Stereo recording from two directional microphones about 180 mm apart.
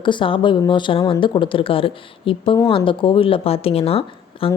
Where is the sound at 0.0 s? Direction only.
25° left (ahead or behind).